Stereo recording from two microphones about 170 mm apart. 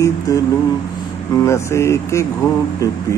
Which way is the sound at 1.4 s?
15° left (ahead or behind).